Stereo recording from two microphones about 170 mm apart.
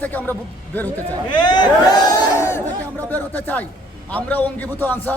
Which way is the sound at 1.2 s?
25° left (ahead or behind).